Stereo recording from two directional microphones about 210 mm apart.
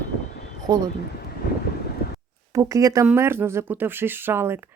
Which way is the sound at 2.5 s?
15° right (ahead or behind).